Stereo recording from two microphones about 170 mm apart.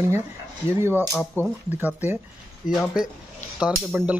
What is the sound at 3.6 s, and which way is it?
Speech, 10° right (ahead or behind).